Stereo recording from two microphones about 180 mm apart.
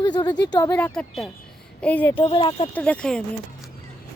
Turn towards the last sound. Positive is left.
turn(degrees=5)  # may be behind; listen again after turning